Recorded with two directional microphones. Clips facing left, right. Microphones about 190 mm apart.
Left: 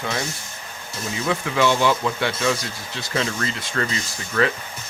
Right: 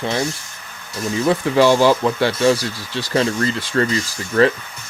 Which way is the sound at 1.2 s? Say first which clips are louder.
Right 6 dB; 35° right (ahead or behind).